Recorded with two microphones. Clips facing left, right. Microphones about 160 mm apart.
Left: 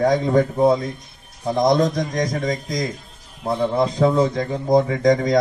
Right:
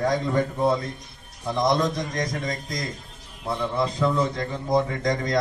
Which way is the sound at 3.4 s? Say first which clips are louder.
Left 6 dB; 45° left (ahead or behind).